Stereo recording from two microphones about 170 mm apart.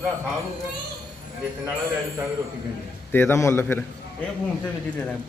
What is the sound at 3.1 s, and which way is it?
Speech, 15° left (ahead or behind).